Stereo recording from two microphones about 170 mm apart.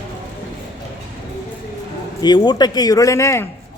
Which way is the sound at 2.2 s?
25° left (ahead or behind).